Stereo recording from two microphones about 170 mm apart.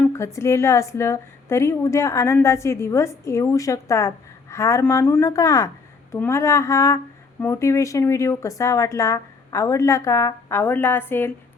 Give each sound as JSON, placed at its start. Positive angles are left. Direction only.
{"t": 0.0, "sound": "a woman's voice", "side_deg": 15}